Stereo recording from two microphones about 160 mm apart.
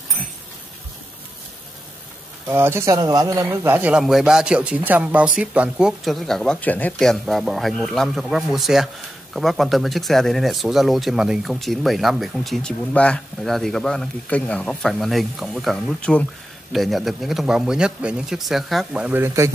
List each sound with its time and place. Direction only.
2.4 s speech: 15° right (ahead or behind)